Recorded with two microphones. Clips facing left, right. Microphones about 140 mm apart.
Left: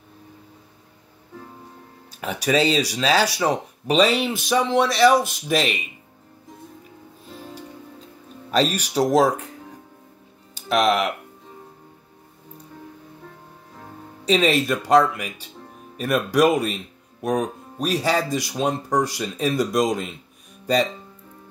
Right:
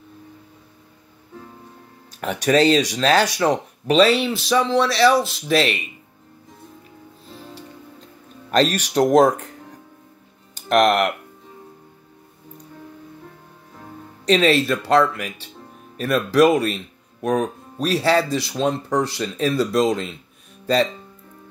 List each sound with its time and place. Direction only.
2.1 s speech: 5° left (ahead or behind)
4.9 s speech: 50° left (ahead or behind)
5.2 s speech: 15° left (ahead or behind)
8.5 s speech: 10° left (ahead or behind)
14.2 s speech: 10° left (ahead or behind)